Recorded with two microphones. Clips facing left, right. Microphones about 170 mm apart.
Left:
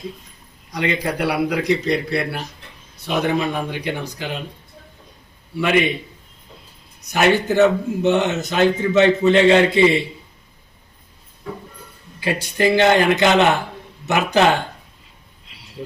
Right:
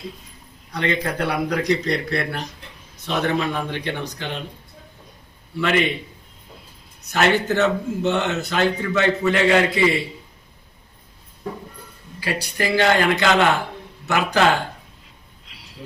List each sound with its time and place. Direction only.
0.7 s a man's voice: 10° left (ahead or behind)
5.5 s a man's voice: 15° left (ahead or behind)
7.1 s speech: 15° left (ahead or behind)
12.2 s speech: 20° left (ahead or behind)
15.4 s a sound: centre (ahead or behind)